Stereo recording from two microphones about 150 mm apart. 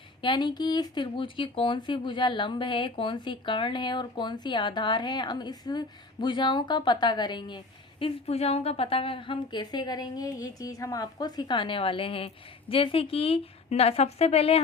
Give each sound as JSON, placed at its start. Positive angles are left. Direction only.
{"t": 0.2, "sound": "speech", "side_deg": 30}